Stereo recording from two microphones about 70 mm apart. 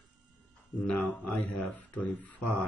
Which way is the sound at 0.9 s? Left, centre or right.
Centre.